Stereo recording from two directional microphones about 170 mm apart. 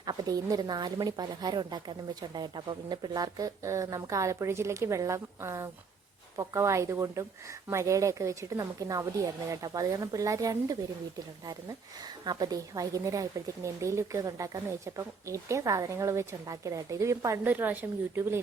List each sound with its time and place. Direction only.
0.0 s a woman's voice: 25° right (ahead or behind)
12.2 s a woman's voice: 25° right (ahead or behind)